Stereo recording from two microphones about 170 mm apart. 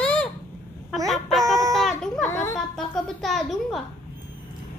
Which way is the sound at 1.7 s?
Centre (ahead or behind).